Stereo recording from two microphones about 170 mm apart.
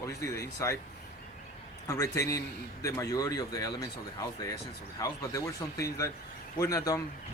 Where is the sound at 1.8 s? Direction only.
20° left (ahead or behind).